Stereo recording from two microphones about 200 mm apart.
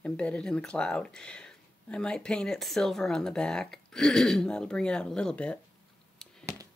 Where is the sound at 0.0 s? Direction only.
5° left (ahead or behind).